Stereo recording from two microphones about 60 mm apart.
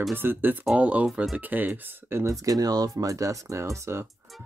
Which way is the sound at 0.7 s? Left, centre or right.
Right.